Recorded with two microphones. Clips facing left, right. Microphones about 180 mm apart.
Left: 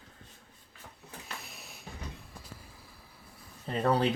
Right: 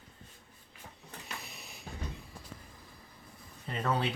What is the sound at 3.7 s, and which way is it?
Speech, 35° left (ahead or behind).